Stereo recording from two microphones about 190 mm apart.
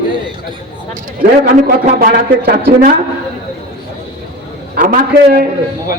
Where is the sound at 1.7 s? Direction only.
50° right (ahead or behind).